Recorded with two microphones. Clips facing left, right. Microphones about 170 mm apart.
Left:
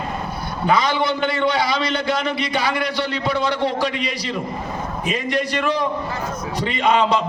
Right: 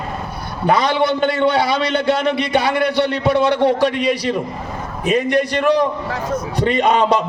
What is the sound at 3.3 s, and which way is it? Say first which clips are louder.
A man's voice: right 6 dB; 60° right (ahead or behind).